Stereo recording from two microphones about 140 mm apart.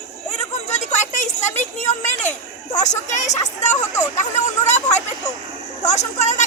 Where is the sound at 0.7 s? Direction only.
55° left (ahead or behind).